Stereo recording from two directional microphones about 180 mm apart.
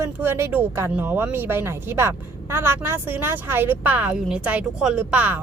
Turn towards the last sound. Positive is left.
turn(degrees=-10)  # may be behind; listen again after turning